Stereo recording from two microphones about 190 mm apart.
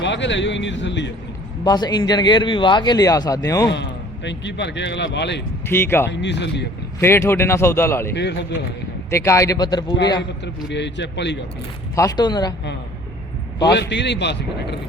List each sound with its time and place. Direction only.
0.0 s a man's voice: 70° left (ahead or behind)
1.6 s a man's voice: 20° left (ahead or behind)
3.7 s speech: 70° left (ahead or behind)
5.6 s speech: 10° left (ahead or behind)
6.1 s speech: 65° left (ahead or behind)
7.0 s speech: 15° left (ahead or behind)
8.1 s a man's voice: 65° left (ahead or behind)
9.0 s speech: 15° left (ahead or behind)
10.4 s speech: 65° left (ahead or behind)
11.9 s a man's voice: 20° left (ahead or behind)
13.7 s a man's voice: 65° left (ahead or behind)